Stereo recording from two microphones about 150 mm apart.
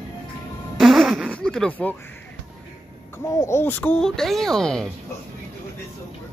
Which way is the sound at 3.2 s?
20° left (ahead or behind).